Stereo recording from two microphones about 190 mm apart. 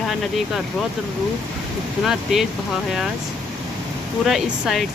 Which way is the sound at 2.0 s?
Centre (ahead or behind).